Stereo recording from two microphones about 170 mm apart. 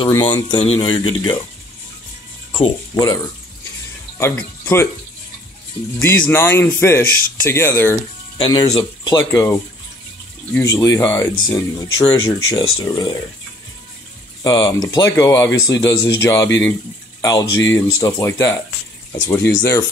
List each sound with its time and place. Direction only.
0.0 s speech: 25° left (ahead or behind)
2.5 s speech: 30° left (ahead or behind)
4.2 s speech: 15° left (ahead or behind)
5.9 s speech: 15° left (ahead or behind)
8.4 s speech: 25° left (ahead or behind)
14.4 s speech: 20° left (ahead or behind)